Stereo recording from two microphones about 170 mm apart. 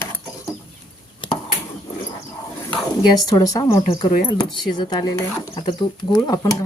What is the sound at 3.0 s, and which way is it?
Speech, 20° left (ahead or behind).